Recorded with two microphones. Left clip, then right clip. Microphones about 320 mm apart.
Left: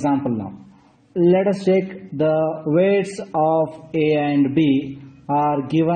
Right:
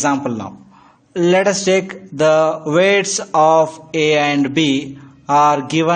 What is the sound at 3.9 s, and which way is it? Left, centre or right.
Speech, right.